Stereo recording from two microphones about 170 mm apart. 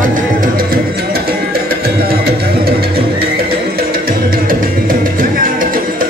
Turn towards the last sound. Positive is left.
turn(degrees=-55)  # may be behind; listen again after turning